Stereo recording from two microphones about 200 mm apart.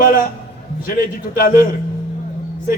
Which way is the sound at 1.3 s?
45° left (ahead or behind).